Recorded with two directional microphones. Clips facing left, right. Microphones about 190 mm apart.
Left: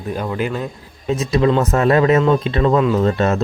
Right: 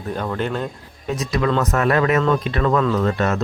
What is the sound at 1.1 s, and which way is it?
Speech, 25° left (ahead or behind).